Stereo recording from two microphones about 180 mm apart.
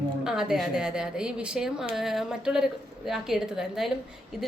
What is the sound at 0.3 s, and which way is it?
A woman's voice, 5° right (ahead or behind).